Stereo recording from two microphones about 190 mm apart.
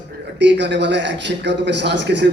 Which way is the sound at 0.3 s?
65° right (ahead or behind).